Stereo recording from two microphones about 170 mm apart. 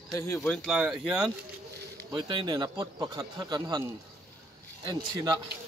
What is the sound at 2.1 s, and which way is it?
Speech, 25° right (ahead or behind).